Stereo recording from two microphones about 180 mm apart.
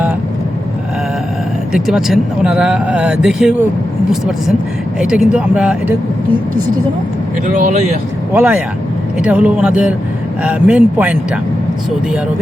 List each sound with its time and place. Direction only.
1.7 s speech: 5° right (ahead or behind)
4.9 s speech: 5° right (ahead or behind)
7.4 s speech: 45° right (ahead or behind)
8.3 s speech: 10° right (ahead or behind)